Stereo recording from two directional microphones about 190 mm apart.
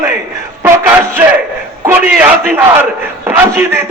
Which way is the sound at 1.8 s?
10° right (ahead or behind).